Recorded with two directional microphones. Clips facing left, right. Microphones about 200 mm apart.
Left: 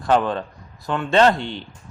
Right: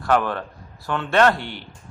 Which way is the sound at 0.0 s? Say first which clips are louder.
Left 2 dB; 20° left (ahead or behind).